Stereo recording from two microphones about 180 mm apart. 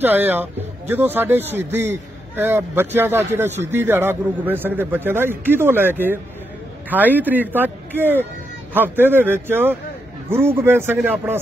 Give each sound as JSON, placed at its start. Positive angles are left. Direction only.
{"t": 0.0, "sound": "a man's voice", "side_deg": -10}